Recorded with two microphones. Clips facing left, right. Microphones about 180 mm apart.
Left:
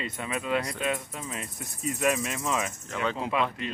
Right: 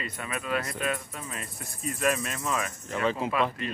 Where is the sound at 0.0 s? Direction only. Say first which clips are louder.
Left 2 dB; 20° left (ahead or behind).